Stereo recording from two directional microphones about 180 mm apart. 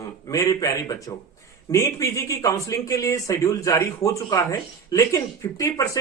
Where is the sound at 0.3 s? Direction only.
20° left (ahead or behind).